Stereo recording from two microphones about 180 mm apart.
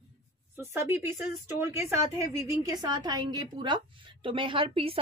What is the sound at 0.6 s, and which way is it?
A woman's voice, 15° right (ahead or behind).